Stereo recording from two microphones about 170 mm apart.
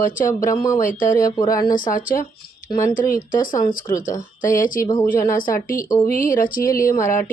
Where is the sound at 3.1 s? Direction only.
55° left (ahead or behind).